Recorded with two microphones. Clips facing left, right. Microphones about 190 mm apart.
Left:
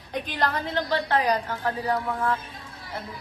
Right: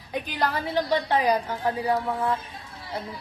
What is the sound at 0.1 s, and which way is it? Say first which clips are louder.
A woman's voice: even; 5° right (ahead or behind).